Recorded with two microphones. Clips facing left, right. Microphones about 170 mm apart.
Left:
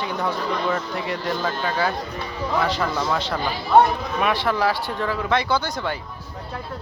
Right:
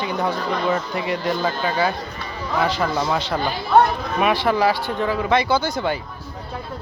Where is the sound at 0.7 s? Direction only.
10° right (ahead or behind).